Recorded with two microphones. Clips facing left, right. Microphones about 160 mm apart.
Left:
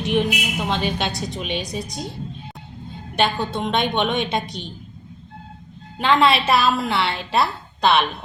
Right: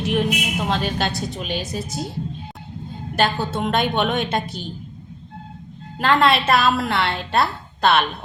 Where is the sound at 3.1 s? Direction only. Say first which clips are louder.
Even; centre (ahead or behind).